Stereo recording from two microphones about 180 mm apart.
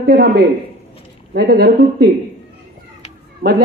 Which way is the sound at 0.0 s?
65° right (ahead or behind).